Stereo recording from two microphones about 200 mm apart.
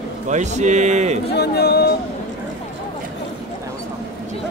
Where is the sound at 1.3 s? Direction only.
55° left (ahead or behind).